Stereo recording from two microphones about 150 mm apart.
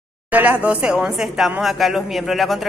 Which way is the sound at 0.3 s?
10° right (ahead or behind).